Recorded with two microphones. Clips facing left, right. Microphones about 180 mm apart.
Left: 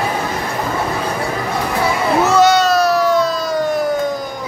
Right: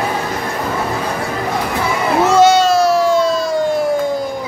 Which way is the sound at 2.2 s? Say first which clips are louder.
Right 3 dB; 25° right (ahead or behind).